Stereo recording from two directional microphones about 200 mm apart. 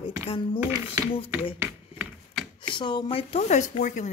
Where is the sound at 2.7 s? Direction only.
20° left (ahead or behind).